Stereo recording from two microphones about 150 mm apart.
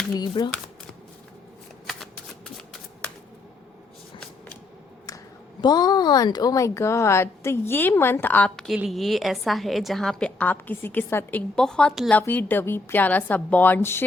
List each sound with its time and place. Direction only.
0.2 s speech: 30° left (ahead or behind)
1.9 s shuffling cards: centre (ahead or behind)
5.6 s a woman's voice: 25° left (ahead or behind)